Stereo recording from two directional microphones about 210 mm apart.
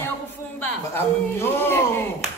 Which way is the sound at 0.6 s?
10° left (ahead or behind).